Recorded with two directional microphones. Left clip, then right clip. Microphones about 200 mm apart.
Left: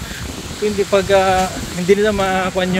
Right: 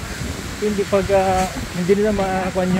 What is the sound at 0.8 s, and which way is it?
Speech, 45° left (ahead or behind).